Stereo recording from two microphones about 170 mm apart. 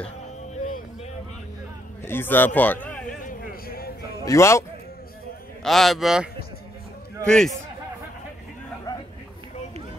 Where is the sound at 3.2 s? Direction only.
60° left (ahead or behind).